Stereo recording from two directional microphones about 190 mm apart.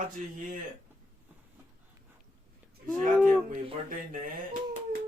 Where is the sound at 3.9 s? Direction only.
45° right (ahead or behind).